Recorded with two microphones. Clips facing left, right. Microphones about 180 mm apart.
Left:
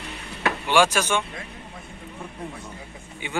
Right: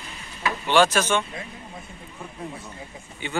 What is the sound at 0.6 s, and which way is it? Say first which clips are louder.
Speech: right 1 dB; 10° left (ahead or behind).